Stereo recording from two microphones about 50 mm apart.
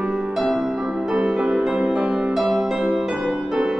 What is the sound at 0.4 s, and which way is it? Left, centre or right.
Music, centre.